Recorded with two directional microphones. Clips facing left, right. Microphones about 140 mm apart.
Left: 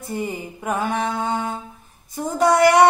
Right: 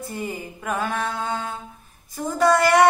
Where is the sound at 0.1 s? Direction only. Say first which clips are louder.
Left 7 dB; 15° left (ahead or behind).